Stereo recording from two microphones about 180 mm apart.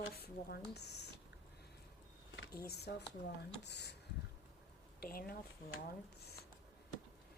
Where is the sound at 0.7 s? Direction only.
70° left (ahead or behind).